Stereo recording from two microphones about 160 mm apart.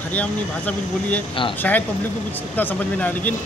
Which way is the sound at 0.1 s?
10° left (ahead or behind).